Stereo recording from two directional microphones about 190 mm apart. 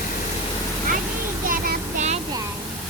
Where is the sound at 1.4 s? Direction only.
45° right (ahead or behind).